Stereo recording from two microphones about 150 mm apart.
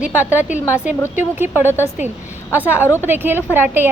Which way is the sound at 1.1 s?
15° right (ahead or behind).